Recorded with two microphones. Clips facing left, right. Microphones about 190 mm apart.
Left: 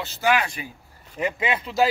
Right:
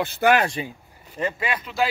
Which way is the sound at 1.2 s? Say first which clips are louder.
Left 1 dB; 15° left (ahead or behind).